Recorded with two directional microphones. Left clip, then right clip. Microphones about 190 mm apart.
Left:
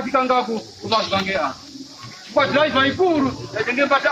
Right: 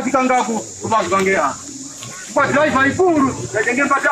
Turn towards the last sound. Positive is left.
turn(degrees=45)  # may be behind; listen again after turning